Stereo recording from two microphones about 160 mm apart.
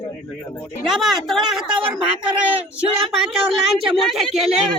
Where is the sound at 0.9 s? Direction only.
Centre (ahead or behind).